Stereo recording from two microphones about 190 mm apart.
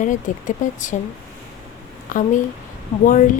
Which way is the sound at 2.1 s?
40° left (ahead or behind).